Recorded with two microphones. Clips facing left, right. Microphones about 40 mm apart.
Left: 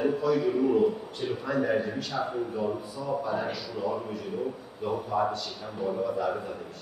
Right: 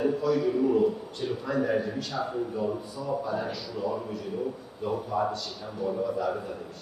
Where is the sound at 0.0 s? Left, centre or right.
Centre.